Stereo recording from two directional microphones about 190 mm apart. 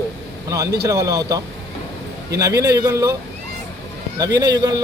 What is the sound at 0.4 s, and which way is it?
Speech, 15° right (ahead or behind).